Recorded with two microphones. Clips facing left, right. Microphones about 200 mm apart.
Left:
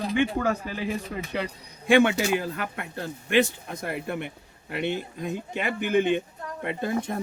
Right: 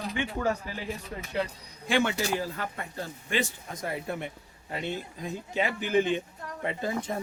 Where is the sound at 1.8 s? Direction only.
60° left (ahead or behind).